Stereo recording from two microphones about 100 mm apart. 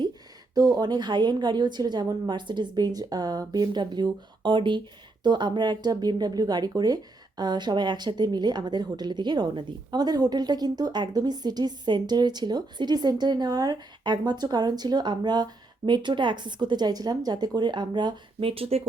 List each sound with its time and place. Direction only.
0.5 s speech: 40° right (ahead or behind)
18.3 s speech: 70° right (ahead or behind)